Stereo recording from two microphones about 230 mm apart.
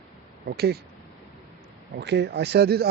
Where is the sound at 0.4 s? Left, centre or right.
Right.